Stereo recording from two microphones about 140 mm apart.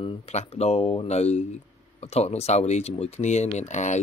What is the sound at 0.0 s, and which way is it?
Speech, 50° left (ahead or behind).